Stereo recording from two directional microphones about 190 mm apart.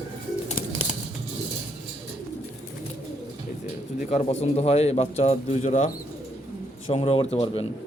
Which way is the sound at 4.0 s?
35° left (ahead or behind).